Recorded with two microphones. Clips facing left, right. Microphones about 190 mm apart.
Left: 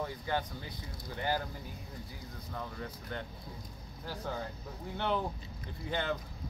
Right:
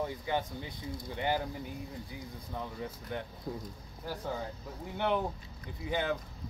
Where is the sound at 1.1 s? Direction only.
20° right (ahead or behind).